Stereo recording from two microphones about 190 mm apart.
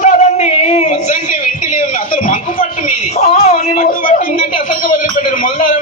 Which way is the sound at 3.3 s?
35° left (ahead or behind).